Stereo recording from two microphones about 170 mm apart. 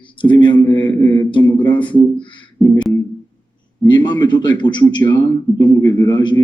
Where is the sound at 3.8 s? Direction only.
25° left (ahead or behind).